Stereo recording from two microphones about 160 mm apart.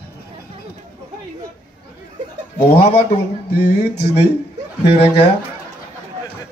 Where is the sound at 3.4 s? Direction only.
90° left.